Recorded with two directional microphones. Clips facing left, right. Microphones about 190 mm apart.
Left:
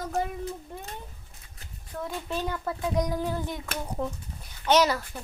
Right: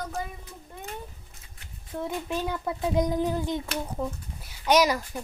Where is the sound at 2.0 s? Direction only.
15° right (ahead or behind).